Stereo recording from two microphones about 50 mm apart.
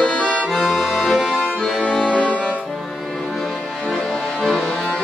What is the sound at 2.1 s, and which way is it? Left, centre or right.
Music, centre.